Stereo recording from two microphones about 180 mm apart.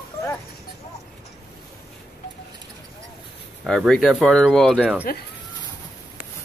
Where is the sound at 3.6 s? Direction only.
Centre (ahead or behind).